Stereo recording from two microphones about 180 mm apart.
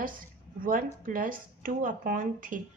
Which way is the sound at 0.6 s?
50° right (ahead or behind).